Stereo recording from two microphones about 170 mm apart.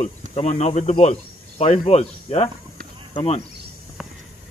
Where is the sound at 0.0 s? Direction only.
40° left (ahead or behind).